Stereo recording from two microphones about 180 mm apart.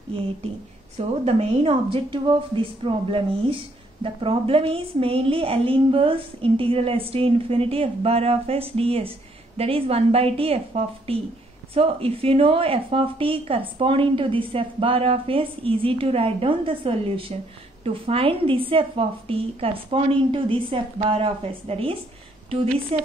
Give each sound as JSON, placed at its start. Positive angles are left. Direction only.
{"t": 0.9, "sound": "a woman's voice", "side_deg": -35}